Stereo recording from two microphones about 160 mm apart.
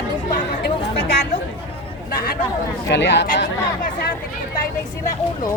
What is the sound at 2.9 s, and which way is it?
Speech, 90° left.